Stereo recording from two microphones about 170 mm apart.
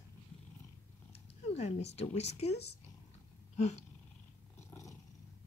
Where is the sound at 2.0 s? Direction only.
40° left (ahead or behind).